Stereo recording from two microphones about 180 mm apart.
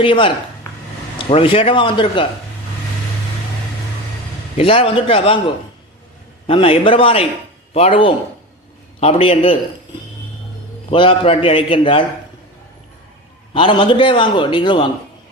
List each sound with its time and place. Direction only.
0.0 s a man's voice: 30° left (ahead or behind)
4.5 s a man's voice: 30° left (ahead or behind)
6.5 s a man's voice: 30° left (ahead or behind)
10.9 s a man's voice: 30° left (ahead or behind)
13.5 s a man's voice: 25° left (ahead or behind)